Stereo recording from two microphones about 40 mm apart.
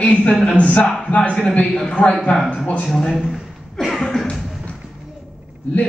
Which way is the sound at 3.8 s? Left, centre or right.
Centre.